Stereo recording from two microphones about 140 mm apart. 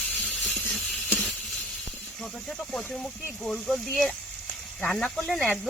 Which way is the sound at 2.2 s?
Centre (ahead or behind).